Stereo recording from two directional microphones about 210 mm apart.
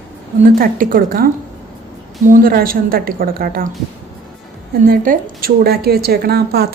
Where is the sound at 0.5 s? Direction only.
45° right (ahead or behind).